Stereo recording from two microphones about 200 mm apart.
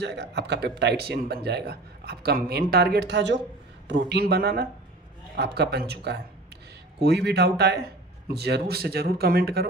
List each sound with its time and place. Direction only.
0.0 s speech: 55° right (ahead or behind)